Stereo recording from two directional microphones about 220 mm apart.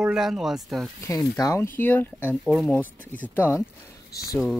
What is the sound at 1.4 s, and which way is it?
Speech, 10° left (ahead or behind).